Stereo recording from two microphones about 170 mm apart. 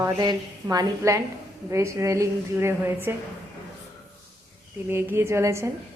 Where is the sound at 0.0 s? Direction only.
25° right (ahead or behind).